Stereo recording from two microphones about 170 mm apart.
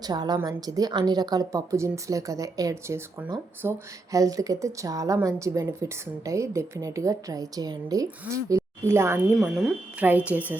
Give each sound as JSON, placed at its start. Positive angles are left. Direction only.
{"t": 0.0, "sound": "a woman's voice", "side_deg": -25}
{"t": 9.4, "sound": "speech", "side_deg": -5}